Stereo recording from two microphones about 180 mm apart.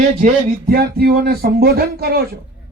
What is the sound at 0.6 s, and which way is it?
Speech, 60° right (ahead or behind).